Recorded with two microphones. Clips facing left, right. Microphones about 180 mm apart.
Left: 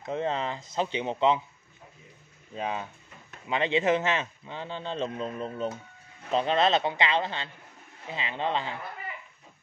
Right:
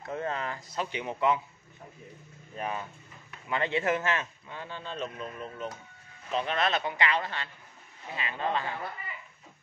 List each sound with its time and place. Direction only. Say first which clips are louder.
0.0 s a man's voice: left 4 dB; 20° left (ahead or behind)
2.5 s a man's voice: left 2 dB; 20° left (ahead or behind)